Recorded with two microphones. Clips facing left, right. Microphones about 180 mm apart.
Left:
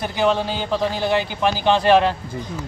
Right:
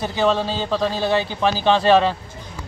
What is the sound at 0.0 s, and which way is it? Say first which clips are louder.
Speech: even; 15° left (ahead or behind).